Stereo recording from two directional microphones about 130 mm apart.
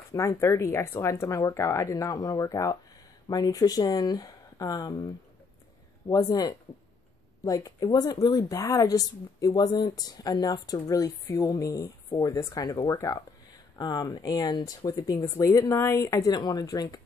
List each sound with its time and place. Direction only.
0.1 s speech: 20° left (ahead or behind)